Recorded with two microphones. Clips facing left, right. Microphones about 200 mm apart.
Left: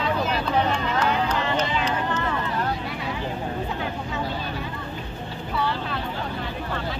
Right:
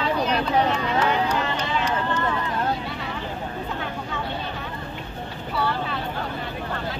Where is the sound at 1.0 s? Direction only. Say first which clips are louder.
Right 2 dB; 10° right (ahead or behind).